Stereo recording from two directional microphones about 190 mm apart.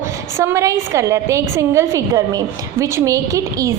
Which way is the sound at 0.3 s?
15° right (ahead or behind).